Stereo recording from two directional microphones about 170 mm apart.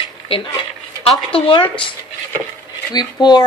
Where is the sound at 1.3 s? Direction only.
30° left (ahead or behind).